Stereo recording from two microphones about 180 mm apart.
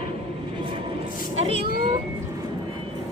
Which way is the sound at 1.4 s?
30° right (ahead or behind).